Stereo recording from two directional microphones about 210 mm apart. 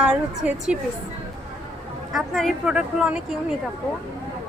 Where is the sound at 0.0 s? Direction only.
5° right (ahead or behind).